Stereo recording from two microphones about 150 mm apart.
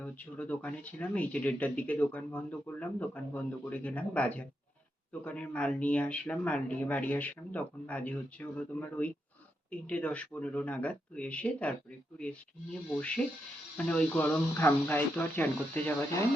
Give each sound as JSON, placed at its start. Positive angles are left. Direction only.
{"t": 0.0, "sound": "speech", "side_deg": 10}
{"t": 13.7, "sound": "speech", "side_deg": 10}